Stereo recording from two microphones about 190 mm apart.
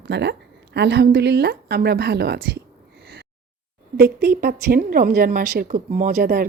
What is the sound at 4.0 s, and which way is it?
A woman's voice, 60° right (ahead or behind).